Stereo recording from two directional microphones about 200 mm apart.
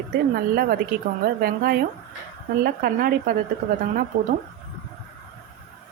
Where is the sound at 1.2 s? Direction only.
45° right (ahead or behind).